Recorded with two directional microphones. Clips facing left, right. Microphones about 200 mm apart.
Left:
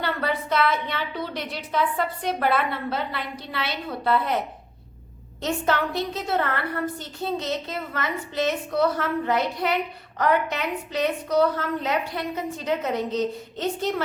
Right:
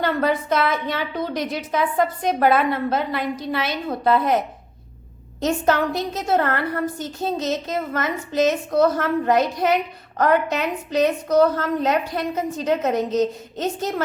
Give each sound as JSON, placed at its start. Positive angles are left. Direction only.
{"t": 0.0, "sound": "a woman's voice", "side_deg": -45}
{"t": 5.4, "sound": "a woman's voice", "side_deg": -40}